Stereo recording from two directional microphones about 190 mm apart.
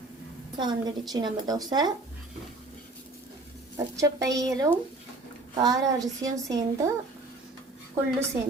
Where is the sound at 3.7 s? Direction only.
15° right (ahead or behind).